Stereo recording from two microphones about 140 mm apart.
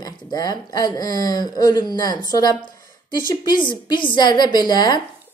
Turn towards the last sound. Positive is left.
turn(degrees=30)  # may be behind; listen again after turning